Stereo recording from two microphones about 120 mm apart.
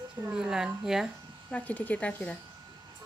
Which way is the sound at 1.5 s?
15° left (ahead or behind).